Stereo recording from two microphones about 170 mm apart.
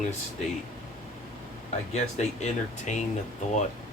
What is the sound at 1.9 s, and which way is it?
Speech, 40° left (ahead or behind).